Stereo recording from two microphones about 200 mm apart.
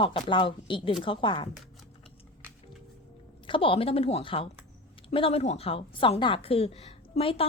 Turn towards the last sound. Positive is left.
turn(degrees=30)  # may be behind; listen again after turning